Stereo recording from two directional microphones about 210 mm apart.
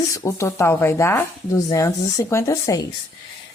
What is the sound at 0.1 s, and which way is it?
A woman's voice, 15° left (ahead or behind).